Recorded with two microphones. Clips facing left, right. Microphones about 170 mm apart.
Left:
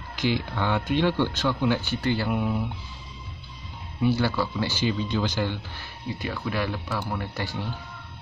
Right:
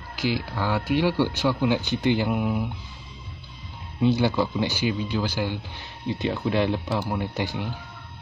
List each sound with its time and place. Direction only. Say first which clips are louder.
0.1 s speech: even; 5° right (ahead or behind)
4.0 s speech: right 3 dB; 20° right (ahead or behind)
6.0 s speech: right 5 dB; 25° right (ahead or behind)